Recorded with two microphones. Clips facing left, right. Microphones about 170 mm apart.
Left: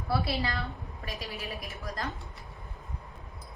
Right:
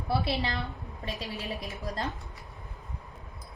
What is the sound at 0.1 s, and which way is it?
Speech, 25° right (ahead or behind).